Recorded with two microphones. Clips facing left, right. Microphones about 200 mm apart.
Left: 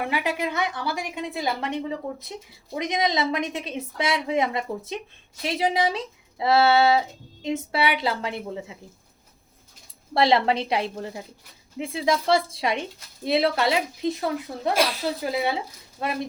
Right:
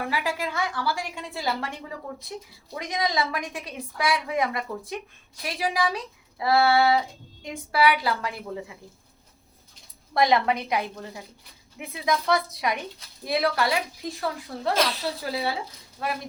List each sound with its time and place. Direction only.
0.0 s a woman's voice: 20° left (ahead or behind)
10.2 s a woman's voice: 30° left (ahead or behind)